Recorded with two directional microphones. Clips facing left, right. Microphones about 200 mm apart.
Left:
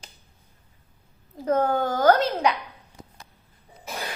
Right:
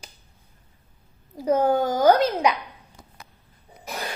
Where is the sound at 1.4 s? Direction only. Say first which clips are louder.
Right 2 dB; 10° right (ahead or behind).